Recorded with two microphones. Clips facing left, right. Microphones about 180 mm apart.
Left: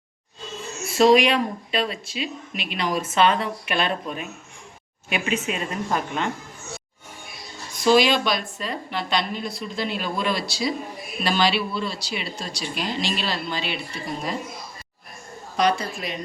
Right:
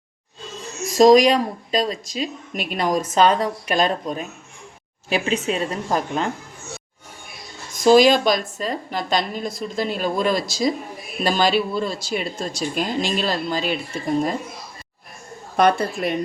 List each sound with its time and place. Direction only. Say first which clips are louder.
0.9 s speech: right 4 dB; 40° right (ahead or behind)
7.8 s speech: right 5 dB; 40° right (ahead or behind)
15.5 s a woman's voice: right 4 dB; 55° right (ahead or behind)